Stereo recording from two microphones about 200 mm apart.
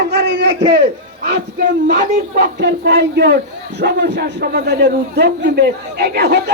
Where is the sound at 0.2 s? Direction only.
60° right (ahead or behind).